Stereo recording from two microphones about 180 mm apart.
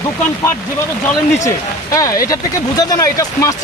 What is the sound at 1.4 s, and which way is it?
Speech, 20° left (ahead or behind).